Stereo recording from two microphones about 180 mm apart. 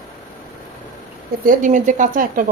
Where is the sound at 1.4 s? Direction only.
50° right (ahead or behind).